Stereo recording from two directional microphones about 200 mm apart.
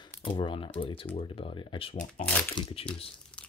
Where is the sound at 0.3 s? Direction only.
25° left (ahead or behind).